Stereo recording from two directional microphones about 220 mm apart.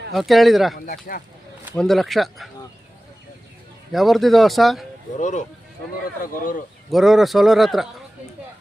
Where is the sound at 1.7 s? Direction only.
Centre (ahead or behind).